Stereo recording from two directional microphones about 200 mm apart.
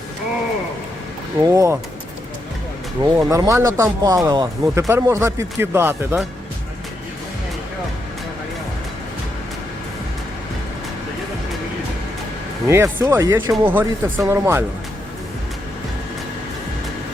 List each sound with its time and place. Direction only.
1.5 s speech: 15° right (ahead or behind)
3.0 s speech: 15° right (ahead or behind)
12.6 s speech: 10° right (ahead or behind)